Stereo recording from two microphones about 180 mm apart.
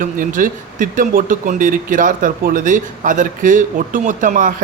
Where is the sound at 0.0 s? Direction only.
50° right (ahead or behind).